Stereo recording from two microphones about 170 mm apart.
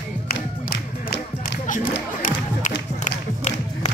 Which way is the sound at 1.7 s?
50° left (ahead or behind).